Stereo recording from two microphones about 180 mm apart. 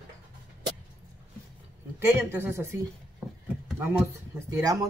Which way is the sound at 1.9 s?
15° right (ahead or behind).